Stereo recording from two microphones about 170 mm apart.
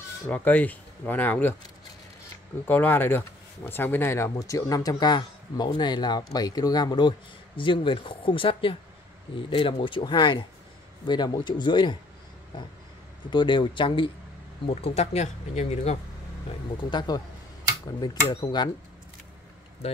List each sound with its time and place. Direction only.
0.3 s speech: 10° left (ahead or behind)
2.6 s speech: 10° left (ahead or behind); by 12.0 s 25° left (ahead or behind)
13.3 s speech: 30° left (ahead or behind)
14.8 s speech: 40° left (ahead or behind)
16.9 s speech: 25° left (ahead or behind)
19.8 s speech: 40° left (ahead or behind)